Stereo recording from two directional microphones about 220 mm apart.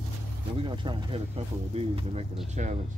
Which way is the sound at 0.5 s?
20° right (ahead or behind).